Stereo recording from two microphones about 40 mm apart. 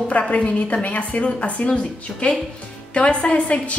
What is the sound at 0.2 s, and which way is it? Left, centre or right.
A woman's voice, left.